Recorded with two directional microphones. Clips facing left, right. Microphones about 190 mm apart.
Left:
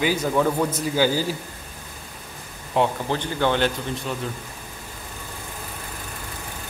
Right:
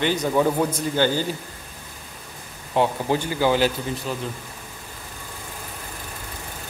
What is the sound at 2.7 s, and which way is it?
A man's voice, centre (ahead or behind).